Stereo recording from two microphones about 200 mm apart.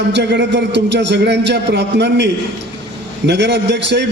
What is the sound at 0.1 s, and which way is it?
A man's voice, 60° right (ahead or behind).